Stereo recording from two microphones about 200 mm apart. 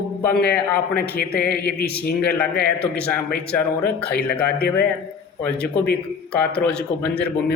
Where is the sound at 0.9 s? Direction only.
50° left (ahead or behind).